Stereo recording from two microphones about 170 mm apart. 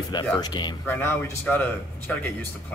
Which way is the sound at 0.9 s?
15° left (ahead or behind).